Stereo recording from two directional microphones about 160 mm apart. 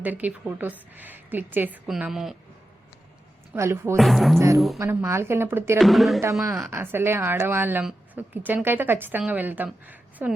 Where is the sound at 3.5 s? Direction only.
15° right (ahead or behind).